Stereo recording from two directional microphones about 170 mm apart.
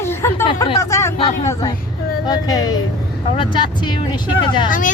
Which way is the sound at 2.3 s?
20° left (ahead or behind).